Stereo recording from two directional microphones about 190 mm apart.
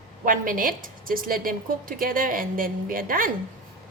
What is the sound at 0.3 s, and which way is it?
A woman's voice, 45° right (ahead or behind).